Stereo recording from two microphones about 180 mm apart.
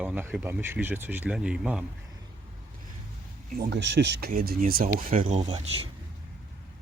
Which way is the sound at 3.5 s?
55° right (ahead or behind).